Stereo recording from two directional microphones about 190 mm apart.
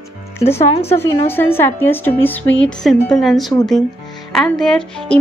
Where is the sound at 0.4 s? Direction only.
35° left (ahead or behind).